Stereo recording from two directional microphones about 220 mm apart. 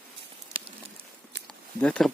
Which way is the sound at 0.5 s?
25° right (ahead or behind).